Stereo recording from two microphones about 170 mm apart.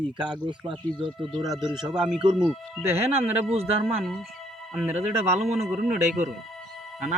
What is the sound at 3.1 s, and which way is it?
Speech, 35° right (ahead or behind).